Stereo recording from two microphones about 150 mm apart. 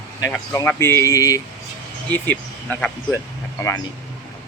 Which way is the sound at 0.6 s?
15° left (ahead or behind).